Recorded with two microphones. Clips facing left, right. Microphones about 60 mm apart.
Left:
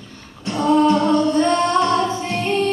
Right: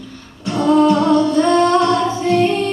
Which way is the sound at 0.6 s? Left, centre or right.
Left.